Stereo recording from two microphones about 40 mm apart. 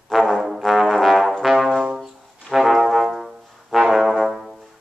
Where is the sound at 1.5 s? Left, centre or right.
Centre.